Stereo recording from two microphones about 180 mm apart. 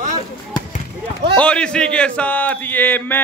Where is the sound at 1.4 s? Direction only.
5° left (ahead or behind).